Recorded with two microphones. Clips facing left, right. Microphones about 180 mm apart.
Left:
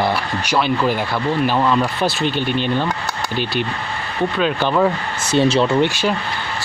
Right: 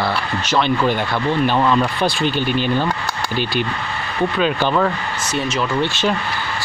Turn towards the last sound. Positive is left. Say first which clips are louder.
# left 6 dB
turn(degrees=30)  # may be behind; listen again after turning